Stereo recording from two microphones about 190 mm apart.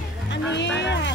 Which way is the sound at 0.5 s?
65° left (ahead or behind).